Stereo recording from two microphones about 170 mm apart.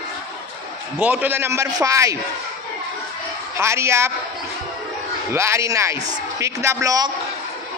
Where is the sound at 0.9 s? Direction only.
10° right (ahead or behind).